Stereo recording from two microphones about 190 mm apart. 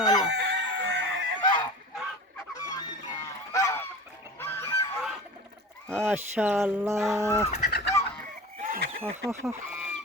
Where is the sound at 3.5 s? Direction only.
15° left (ahead or behind).